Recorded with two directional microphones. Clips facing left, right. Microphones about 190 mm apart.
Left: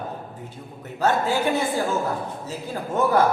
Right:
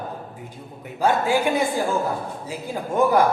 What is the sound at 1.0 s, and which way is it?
A man's voice, 10° right (ahead or behind).